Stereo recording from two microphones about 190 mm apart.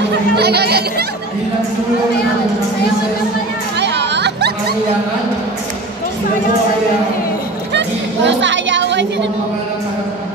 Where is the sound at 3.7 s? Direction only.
65° right (ahead or behind).